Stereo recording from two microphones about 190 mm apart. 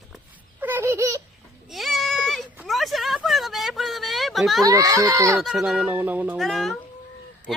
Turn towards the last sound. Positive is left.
turn(degrees=0)  # may be behind; listen again after turning